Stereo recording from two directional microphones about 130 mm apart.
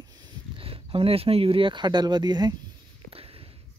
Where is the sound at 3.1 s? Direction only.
45° right (ahead or behind).